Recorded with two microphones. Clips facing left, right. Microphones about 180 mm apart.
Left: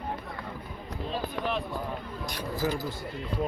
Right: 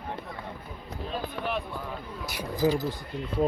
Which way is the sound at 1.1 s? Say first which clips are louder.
Left 1 dB; centre (ahead or behind).